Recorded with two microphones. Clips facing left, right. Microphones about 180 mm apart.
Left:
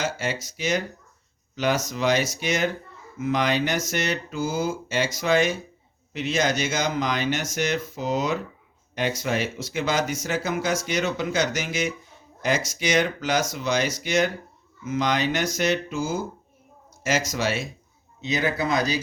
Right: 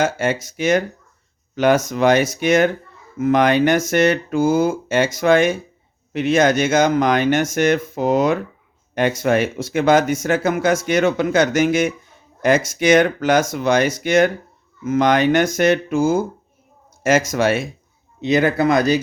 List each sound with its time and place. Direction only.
0.0 s speech: 55° right (ahead or behind)